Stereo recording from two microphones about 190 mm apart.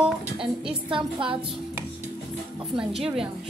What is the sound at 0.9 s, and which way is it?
Speech, 25° right (ahead or behind).